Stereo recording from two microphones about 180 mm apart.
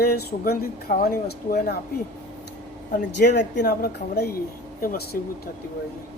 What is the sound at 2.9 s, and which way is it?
Speech, 70° left (ahead or behind).